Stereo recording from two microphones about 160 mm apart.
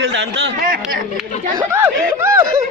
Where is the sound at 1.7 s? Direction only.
15° right (ahead or behind).